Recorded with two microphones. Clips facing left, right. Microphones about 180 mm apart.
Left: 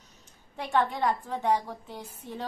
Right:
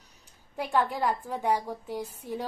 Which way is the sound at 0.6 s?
5° right (ahead or behind).